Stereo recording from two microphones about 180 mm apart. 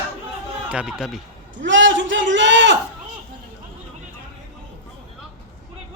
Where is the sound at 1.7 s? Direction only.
90° right.